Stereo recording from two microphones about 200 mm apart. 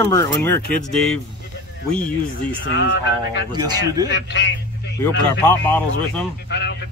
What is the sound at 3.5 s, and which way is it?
Speech, 20° right (ahead or behind).